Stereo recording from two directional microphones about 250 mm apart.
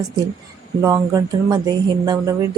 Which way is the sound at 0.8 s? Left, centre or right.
Centre.